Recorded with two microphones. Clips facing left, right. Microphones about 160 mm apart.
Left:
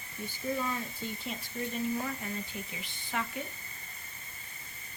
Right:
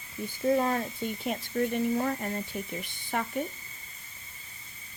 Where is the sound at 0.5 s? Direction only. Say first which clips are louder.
Right 8 dB; 50° right (ahead or behind).